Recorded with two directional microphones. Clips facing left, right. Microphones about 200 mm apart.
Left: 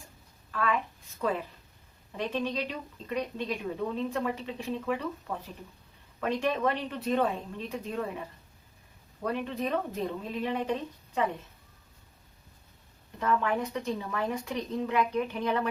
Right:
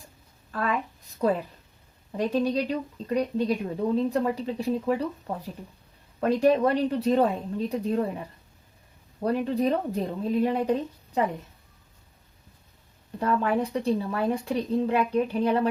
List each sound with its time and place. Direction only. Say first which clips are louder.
0.5 s a woman's voice: right 2 dB; 40° right (ahead or behind)
9.2 s a woman's voice: right 7 dB; 35° right (ahead or behind)
13.1 s a woman's voice: right 4 dB; 35° right (ahead or behind)